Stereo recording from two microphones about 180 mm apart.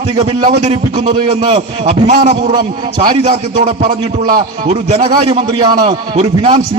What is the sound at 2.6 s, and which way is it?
Speech, 55° right (ahead or behind).